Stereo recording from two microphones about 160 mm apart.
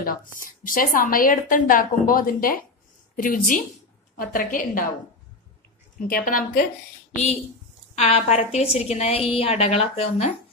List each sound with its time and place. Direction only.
0.0 s a woman's voice: 60° left (ahead or behind)
6.0 s a woman's voice: 65° left (ahead or behind)
8.0 s a woman's voice: 40° left (ahead or behind)